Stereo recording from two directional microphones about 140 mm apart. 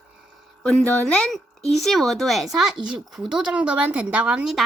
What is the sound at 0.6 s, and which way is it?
Speech, 5° left (ahead or behind).